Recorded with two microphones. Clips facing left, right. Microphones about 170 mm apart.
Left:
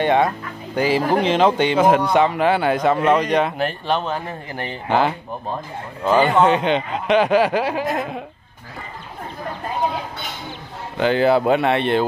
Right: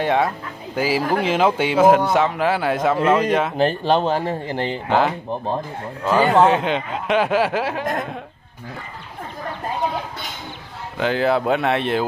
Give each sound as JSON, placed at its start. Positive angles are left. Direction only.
{"t": 0.0, "sound": "speech", "side_deg": 0}
{"t": 3.5, "sound": "speech", "side_deg": -30}
{"t": 4.8, "sound": "speech", "side_deg": 0}
{"t": 11.0, "sound": "speech", "side_deg": 0}